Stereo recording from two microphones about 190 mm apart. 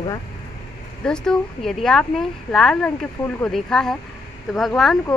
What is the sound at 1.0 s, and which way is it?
Speech, 5° left (ahead or behind).